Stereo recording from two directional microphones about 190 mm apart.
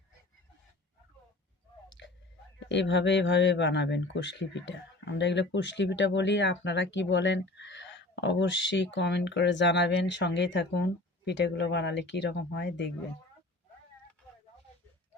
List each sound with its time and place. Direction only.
2.0 s whispering: 65° left (ahead or behind)
2.6 s speech: 65° left (ahead or behind)